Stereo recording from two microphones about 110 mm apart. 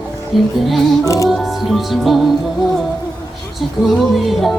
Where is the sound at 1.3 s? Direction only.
Centre (ahead or behind).